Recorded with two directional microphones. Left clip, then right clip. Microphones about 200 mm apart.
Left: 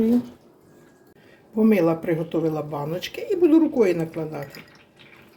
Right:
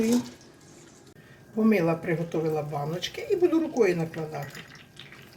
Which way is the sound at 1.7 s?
40° left (ahead or behind).